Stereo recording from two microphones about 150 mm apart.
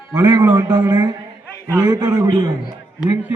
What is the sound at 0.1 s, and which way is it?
A man's voice, 25° right (ahead or behind).